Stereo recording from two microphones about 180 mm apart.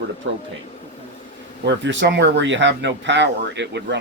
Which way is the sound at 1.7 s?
80° right.